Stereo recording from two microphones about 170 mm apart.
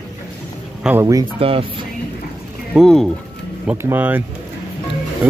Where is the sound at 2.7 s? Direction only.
Centre (ahead or behind).